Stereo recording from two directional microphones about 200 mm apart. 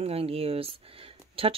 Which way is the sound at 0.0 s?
30° right (ahead or behind).